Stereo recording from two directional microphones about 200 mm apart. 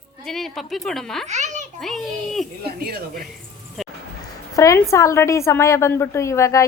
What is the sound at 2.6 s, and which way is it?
Speech, 50° right (ahead or behind).